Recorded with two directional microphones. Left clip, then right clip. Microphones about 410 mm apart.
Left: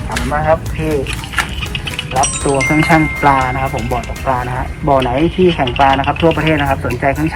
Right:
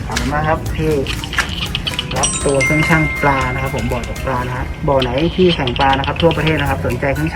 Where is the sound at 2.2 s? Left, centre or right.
Centre.